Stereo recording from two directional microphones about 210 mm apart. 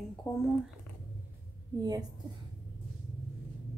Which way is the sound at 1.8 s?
20° right (ahead or behind).